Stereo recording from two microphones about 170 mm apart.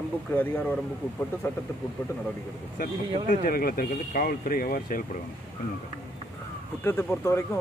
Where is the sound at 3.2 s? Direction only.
60° left (ahead or behind).